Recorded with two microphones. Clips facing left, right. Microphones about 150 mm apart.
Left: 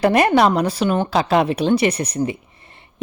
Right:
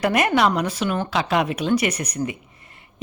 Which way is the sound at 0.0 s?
30° left (ahead or behind).